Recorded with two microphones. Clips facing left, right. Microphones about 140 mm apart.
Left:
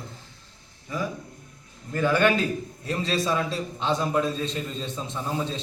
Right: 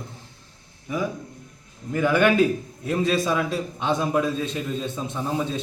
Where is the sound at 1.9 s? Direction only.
15° right (ahead or behind).